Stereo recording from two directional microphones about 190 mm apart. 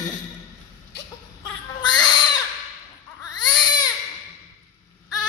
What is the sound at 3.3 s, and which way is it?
Baby cry, 20° left (ahead or behind).